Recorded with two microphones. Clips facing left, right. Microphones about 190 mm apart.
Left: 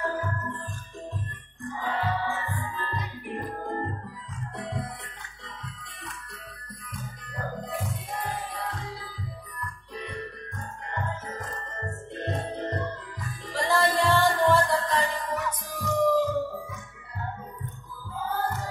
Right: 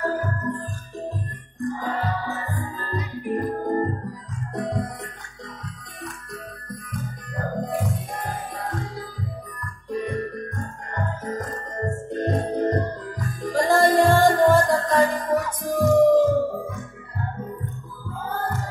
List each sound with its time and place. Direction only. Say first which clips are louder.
0.0 s music: right 5 dB; 40° right (ahead or behind)
1.6 s music: right 4 dB; 40° right (ahead or behind)
6.7 s music: right 8 dB; 45° right (ahead or behind)